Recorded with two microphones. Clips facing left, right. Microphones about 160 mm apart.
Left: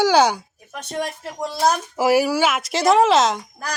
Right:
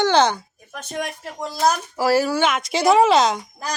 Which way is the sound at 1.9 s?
15° left (ahead or behind).